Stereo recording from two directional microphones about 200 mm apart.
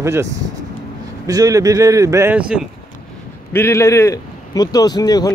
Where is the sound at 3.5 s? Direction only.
15° left (ahead or behind).